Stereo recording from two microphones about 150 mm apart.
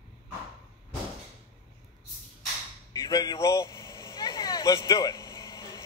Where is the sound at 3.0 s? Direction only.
25° left (ahead or behind).